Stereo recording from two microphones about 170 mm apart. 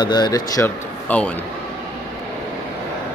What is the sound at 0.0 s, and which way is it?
Speech, 25° left (ahead or behind).